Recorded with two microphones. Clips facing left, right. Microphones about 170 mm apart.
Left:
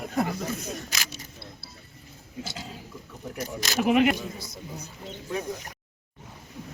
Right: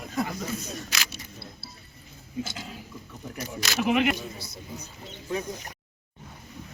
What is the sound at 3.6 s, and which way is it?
Speech, 40° left (ahead or behind).